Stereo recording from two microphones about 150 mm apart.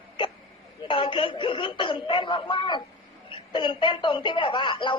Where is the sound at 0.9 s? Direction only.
35° left (ahead or behind).